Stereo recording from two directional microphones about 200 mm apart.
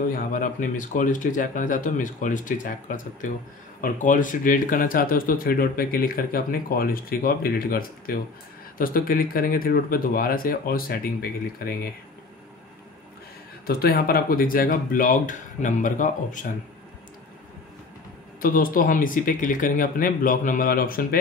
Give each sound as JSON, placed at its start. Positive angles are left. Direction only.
{"t": 0.1, "sound": "speech", "side_deg": 45}
{"t": 13.7, "sound": "speech", "side_deg": 50}
{"t": 18.4, "sound": "speech", "side_deg": 45}